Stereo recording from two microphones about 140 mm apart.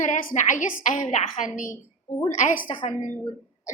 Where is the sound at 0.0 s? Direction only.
75° left (ahead or behind).